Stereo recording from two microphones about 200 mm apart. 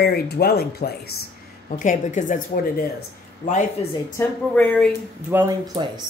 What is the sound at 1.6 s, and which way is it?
Speech, 40° left (ahead or behind).